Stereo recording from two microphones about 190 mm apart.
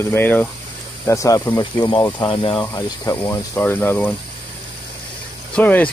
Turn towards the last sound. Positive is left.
turn(degrees=10)  # may be behind; listen again after turning